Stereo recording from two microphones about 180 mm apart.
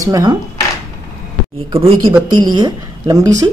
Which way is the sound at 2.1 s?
25° right (ahead or behind).